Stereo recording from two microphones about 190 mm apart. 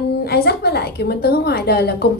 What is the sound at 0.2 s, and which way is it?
A woman's voice, 55° left (ahead or behind).